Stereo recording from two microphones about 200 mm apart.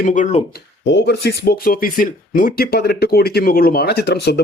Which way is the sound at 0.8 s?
60° left (ahead or behind).